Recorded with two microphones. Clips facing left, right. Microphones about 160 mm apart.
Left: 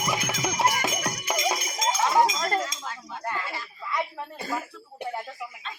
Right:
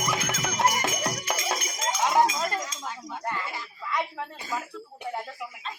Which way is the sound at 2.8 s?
10° right (ahead or behind).